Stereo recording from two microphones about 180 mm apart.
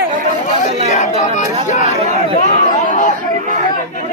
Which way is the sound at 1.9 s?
35° right (ahead or behind).